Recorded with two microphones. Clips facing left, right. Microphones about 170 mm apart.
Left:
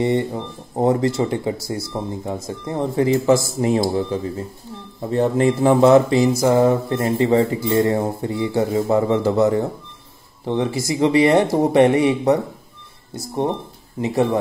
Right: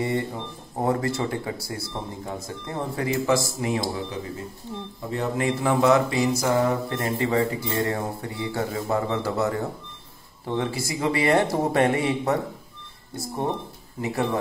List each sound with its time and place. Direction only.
0.0 s mantra: 20° left (ahead or behind)
14.0 s mantra: 25° left (ahead or behind)